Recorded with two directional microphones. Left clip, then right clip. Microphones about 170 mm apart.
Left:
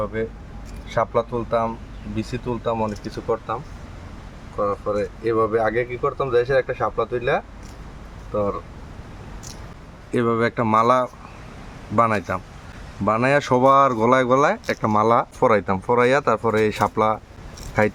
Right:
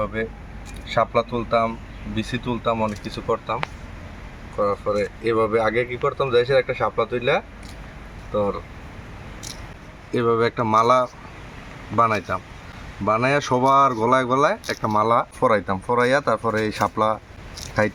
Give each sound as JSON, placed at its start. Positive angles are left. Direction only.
{"t": 0.0, "sound": "speech", "side_deg": 5}
{"t": 10.1, "sound": "speech", "side_deg": 30}
{"t": 14.7, "sound": "speech", "side_deg": 25}
{"t": 15.0, "sound": "speech", "side_deg": 35}